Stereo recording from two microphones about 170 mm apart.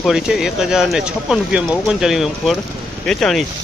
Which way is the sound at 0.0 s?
5° right (ahead or behind).